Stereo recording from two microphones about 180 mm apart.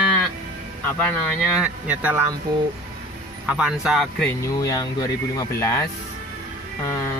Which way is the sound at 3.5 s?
5° right (ahead or behind).